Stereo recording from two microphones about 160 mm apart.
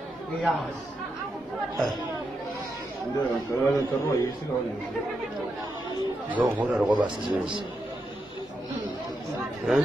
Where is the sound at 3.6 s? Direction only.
20° left (ahead or behind).